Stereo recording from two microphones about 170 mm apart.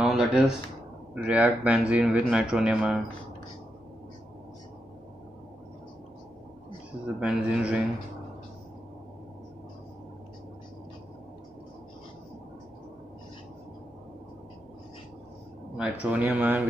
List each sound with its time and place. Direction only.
0.0 s a sound: 5° right (ahead or behind)
1.1 s speech: 10° right (ahead or behind)
7.2 s speech: 5° right (ahead or behind)
15.8 s speech: 10° right (ahead or behind)